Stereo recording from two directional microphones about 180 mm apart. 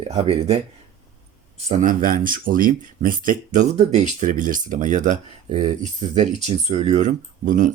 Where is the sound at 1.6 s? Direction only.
45° right (ahead or behind).